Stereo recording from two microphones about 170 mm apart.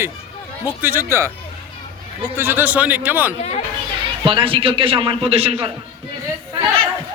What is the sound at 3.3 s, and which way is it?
Speech, 40° left (ahead or behind).